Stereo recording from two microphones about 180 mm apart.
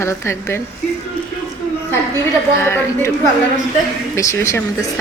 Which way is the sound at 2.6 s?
15° left (ahead or behind).